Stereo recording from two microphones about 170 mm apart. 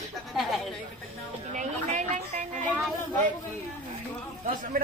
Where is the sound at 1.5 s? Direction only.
45° right (ahead or behind).